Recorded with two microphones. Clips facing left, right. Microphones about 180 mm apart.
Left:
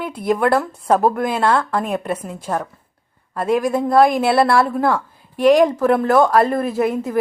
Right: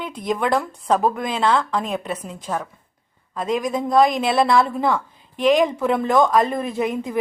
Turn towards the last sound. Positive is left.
turn(degrees=10)  # may be behind; listen again after turning